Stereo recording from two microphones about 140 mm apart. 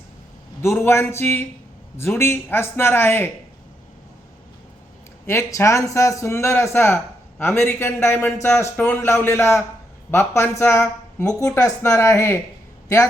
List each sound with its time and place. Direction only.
0.6 s a man's voice: 20° left (ahead or behind)
5.2 s a man's voice: 20° left (ahead or behind)